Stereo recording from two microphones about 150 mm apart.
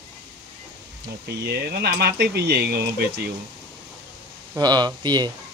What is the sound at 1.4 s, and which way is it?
Speech, 90° right.